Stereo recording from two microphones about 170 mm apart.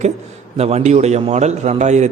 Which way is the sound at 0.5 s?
40° right (ahead or behind).